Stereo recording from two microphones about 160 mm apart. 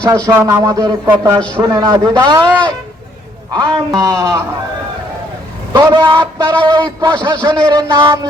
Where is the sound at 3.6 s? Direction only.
25° right (ahead or behind).